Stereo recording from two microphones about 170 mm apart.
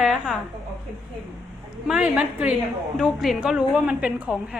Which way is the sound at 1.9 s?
5° right (ahead or behind).